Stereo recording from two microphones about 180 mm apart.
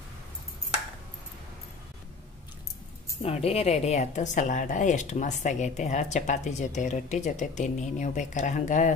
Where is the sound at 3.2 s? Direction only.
35° left (ahead or behind).